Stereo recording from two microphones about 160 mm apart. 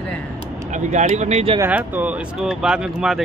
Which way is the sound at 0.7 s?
45° right (ahead or behind).